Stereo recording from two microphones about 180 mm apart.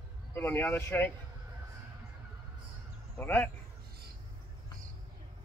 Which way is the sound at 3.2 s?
10° left (ahead or behind).